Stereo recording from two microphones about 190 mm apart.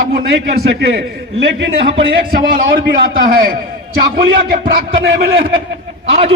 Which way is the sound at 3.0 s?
50° right (ahead or behind).